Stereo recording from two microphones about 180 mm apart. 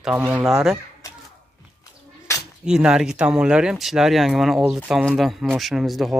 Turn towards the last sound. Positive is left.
turn(degrees=0)  # may be behind; listen again after turning